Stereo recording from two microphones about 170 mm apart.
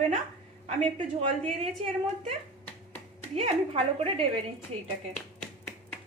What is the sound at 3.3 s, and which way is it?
Speech, 35° right (ahead or behind).